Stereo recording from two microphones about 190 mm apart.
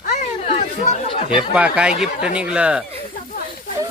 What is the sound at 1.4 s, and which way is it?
Speech, 5° right (ahead or behind).